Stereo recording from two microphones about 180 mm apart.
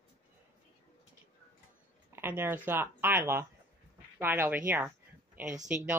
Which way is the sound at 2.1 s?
10° right (ahead or behind).